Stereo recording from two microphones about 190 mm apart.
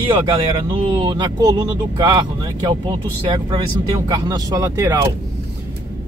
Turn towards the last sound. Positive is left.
turn(degrees=-15)  # may be behind; listen again after turning